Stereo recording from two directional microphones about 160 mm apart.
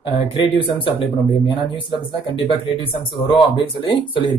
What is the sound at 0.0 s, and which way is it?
A man's voice, 35° left (ahead or behind).